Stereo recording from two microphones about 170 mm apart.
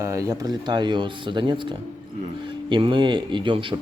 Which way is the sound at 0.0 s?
20° right (ahead or behind).